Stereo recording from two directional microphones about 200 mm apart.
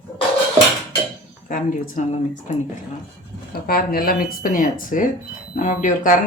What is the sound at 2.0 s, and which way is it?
Speech, 35° left (ahead or behind).